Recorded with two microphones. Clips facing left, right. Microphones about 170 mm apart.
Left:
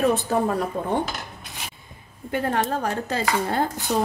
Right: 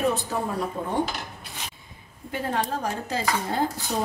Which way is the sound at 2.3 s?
60° left (ahead or behind).